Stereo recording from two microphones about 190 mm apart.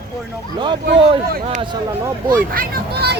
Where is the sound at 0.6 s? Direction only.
25° right (ahead or behind).